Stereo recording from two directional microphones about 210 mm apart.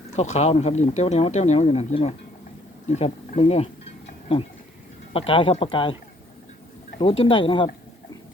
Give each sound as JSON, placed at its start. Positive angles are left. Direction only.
{"t": 0.2, "sound": "speech", "side_deg": 30}
{"t": 2.9, "sound": "a sound", "side_deg": 30}
{"t": 5.1, "sound": "speech", "side_deg": 25}
{"t": 7.0, "sound": "speech", "side_deg": 25}